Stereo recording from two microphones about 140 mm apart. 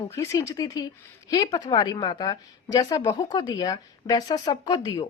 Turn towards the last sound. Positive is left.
turn(degrees=30)  # may be behind; listen again after turning